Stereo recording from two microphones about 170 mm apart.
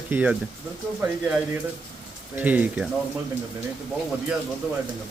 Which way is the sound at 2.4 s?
10° right (ahead or behind).